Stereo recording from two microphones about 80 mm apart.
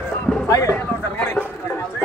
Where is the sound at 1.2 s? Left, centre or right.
Left.